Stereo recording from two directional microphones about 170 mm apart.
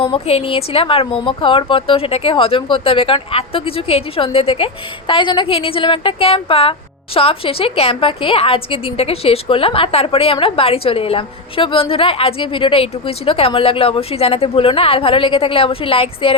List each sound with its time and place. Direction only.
0.0 s a woman's voice: 35° left (ahead or behind)